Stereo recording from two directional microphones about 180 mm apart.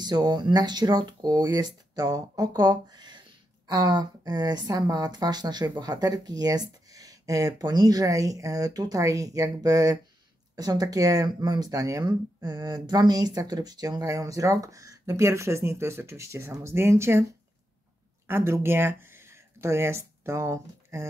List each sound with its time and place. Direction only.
0.0 s speech: 25° right (ahead or behind)